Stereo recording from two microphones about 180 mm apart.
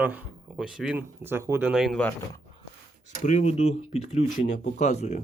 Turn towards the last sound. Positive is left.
turn(degrees=40)  # may be behind; listen again after turning